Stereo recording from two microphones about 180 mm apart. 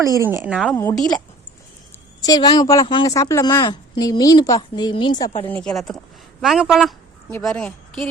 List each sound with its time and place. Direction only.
0.0 s a woman's voice: 15° right (ahead or behind)
0.7 s speech: 15° left (ahead or behind)
2.2 s a woman's voice: 20° left (ahead or behind)
5.5 s a woman's voice: 5° left (ahead or behind)